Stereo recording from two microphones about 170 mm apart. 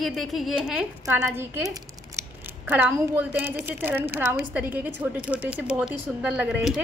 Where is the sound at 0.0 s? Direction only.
Centre (ahead or behind).